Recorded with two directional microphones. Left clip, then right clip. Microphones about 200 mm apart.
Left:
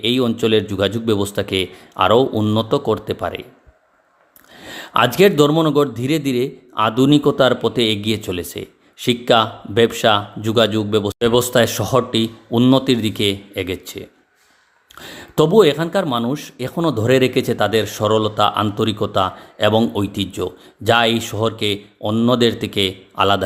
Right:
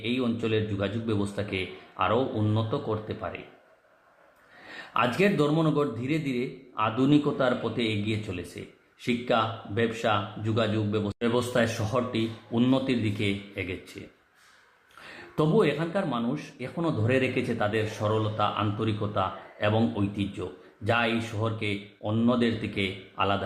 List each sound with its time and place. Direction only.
0.0 s a man's voice: 50° left (ahead or behind)
4.6 s a man's voice: 50° left (ahead or behind)
15.0 s a man's voice: 50° left (ahead or behind)